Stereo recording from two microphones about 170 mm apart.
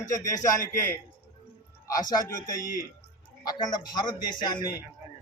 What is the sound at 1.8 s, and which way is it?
A man's voice, 20° left (ahead or behind).